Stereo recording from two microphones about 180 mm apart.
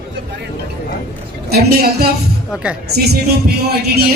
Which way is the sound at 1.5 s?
60° right (ahead or behind).